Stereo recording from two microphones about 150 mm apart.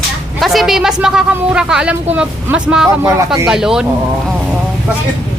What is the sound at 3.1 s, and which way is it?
Speech, 20° right (ahead or behind).